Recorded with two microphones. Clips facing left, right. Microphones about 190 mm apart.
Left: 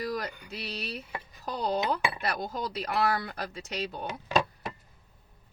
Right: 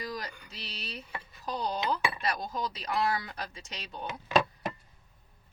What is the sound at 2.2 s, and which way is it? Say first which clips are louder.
Speech: left 1 dB; 60° left (ahead or behind).